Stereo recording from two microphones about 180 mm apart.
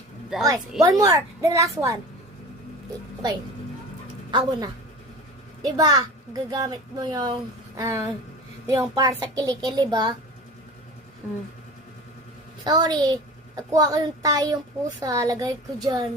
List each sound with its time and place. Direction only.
0.3 s a woman's voice: 5° right (ahead or behind)
0.8 s a woman's voice: 15° right (ahead or behind)
4.3 s a child's voice: 25° right (ahead or behind)
5.7 s a child's voice: 20° right (ahead or behind)
11.2 s a woman's voice: 10° right (ahead or behind)
12.6 s a child's voice: 25° right (ahead or behind)